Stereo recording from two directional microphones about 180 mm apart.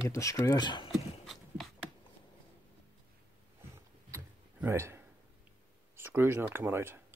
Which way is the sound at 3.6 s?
15° right (ahead or behind).